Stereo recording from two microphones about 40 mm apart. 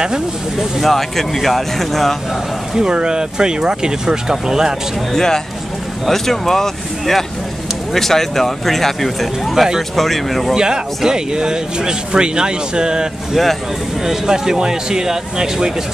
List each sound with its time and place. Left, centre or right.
0.0 s speech: centre
0.7 s speech: centre
2.7 s speech: centre
5.1 s speech: centre
10.5 s speech: centre
13.3 s speech: centre
14.0 s speech: centre